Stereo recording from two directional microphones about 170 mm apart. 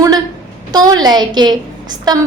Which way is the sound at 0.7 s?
25° right (ahead or behind).